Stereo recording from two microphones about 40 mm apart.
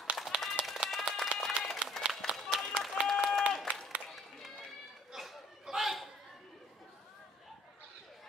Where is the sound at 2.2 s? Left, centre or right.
Centre.